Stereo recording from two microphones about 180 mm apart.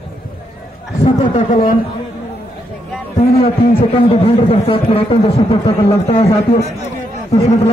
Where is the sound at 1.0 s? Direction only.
35° left (ahead or behind).